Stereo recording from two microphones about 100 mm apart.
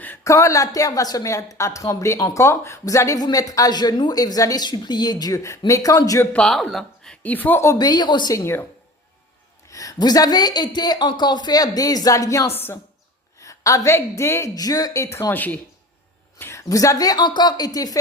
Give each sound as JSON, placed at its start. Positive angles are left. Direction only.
{"t": 0.3, "sound": "a woman's voice", "side_deg": 35}
{"t": 6.3, "sound": "speech", "side_deg": 5}
{"t": 7.6, "sound": "speech", "side_deg": 30}
{"t": 7.9, "sound": "speech", "side_deg": 45}
{"t": 9.6, "sound": "a woman's voice", "side_deg": 35}
{"t": 12.5, "sound": "speech", "side_deg": 20}
{"t": 13.4, "sound": "a woman's voice", "side_deg": 35}
{"t": 14.5, "sound": "a woman's voice", "side_deg": 40}
{"t": 15.3, "sound": "speech", "side_deg": 15}
{"t": 16.4, "sound": "a woman's voice", "side_deg": 30}